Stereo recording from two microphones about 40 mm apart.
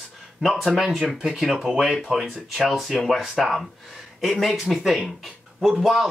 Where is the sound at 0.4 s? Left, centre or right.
Centre.